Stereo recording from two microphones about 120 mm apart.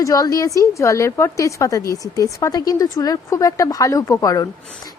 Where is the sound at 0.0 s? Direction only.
30° left (ahead or behind).